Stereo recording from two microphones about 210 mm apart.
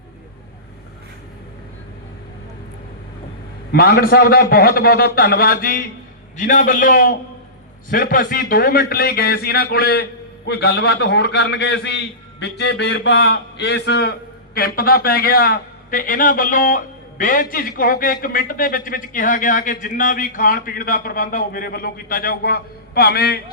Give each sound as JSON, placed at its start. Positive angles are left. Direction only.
{"t": 3.7, "sound": "a man's voice", "side_deg": 45}